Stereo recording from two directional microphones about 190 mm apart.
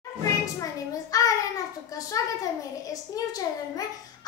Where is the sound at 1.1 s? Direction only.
20° left (ahead or behind).